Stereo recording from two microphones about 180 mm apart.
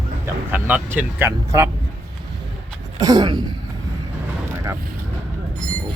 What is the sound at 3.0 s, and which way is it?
Speech, 20° right (ahead or behind).